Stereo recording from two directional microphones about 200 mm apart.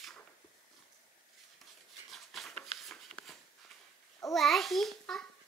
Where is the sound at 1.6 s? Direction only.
Centre (ahead or behind).